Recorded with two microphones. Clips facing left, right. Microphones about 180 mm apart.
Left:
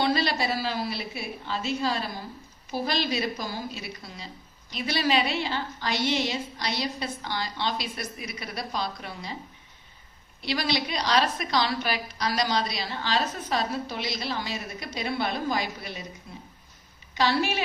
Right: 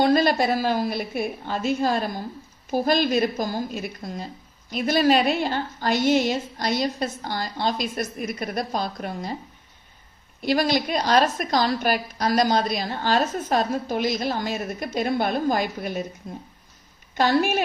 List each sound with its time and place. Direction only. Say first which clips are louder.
0.0 s a woman's voice: right 7 dB; 50° right (ahead or behind)
10.4 s a woman's voice: right 7 dB; 50° right (ahead or behind)